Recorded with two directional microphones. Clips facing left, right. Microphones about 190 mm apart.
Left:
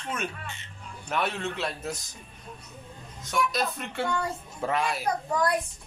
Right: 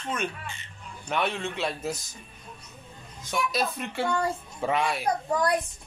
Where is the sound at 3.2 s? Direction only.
Centre (ahead or behind).